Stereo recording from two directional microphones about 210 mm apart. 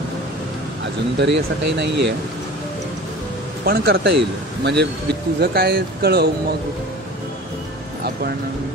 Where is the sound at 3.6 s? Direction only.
50° right (ahead or behind).